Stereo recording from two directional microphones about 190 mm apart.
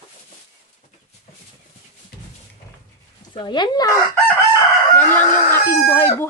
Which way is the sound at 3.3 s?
25° left (ahead or behind).